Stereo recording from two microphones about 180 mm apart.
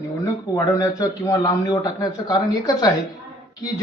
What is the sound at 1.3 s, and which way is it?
A man's voice, 20° left (ahead or behind).